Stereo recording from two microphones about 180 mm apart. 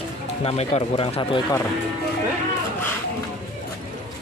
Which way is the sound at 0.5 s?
35° left (ahead or behind).